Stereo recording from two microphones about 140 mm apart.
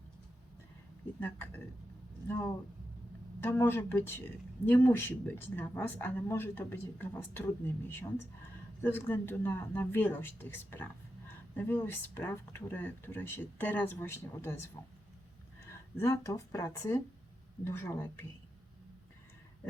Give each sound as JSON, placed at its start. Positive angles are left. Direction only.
{"t": 1.2, "sound": "speech", "side_deg": 15}